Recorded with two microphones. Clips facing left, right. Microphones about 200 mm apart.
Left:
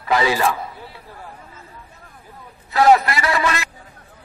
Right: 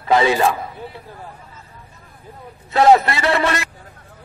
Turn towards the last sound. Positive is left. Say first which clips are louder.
# right 3 dB
turn(degrees=-25)  # may be behind; listen again after turning